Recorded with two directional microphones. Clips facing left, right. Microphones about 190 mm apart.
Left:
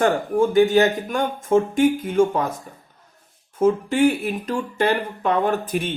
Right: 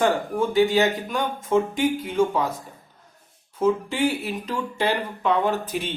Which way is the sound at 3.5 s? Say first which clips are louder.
Left 4 dB; 50° left (ahead or behind).